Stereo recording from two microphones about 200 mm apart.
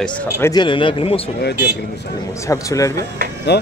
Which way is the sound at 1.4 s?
55° left (ahead or behind).